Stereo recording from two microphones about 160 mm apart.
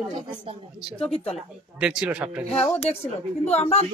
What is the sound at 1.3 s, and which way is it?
Speech, 5° right (ahead or behind).